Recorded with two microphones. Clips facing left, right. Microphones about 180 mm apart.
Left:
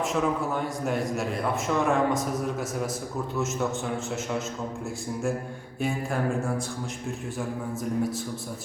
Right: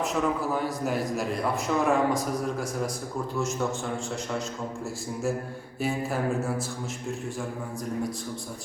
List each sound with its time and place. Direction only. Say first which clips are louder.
0.0 s a man's voice: left 1 dB; centre (ahead or behind)
5.8 s a man's voice: even; 5° right (ahead or behind)